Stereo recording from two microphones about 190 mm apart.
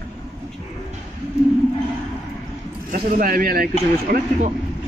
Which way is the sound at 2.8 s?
45° right (ahead or behind).